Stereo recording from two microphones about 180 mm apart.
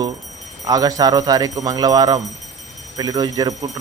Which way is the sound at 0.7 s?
20° right (ahead or behind).